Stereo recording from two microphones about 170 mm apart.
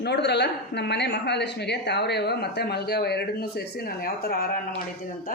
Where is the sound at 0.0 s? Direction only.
80° left.